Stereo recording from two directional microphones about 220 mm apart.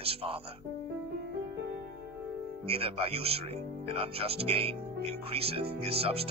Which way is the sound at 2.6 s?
25° right (ahead or behind).